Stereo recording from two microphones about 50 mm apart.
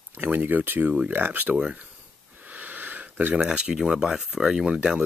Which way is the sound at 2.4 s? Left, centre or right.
Right.